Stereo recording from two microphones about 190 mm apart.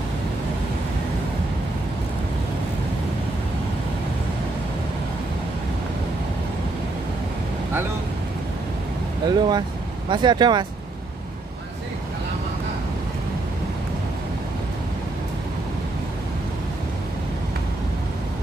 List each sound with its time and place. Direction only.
9.2 s speech: 20° right (ahead or behind)